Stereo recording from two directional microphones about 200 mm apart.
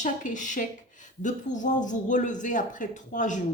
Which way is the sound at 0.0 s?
40° left (ahead or behind).